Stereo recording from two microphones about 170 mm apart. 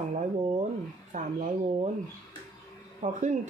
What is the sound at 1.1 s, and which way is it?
Speech, 45° right (ahead or behind).